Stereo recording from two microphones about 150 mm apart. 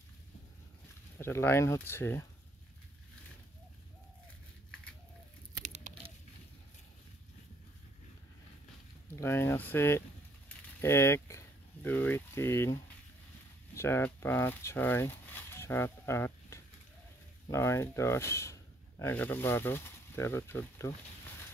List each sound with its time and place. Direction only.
1.1 s speech: 15° left (ahead or behind)
5.6 s a sound: 50° right (ahead or behind)
9.1 s speech: 15° left (ahead or behind)
13.7 s speech: 15° left (ahead or behind)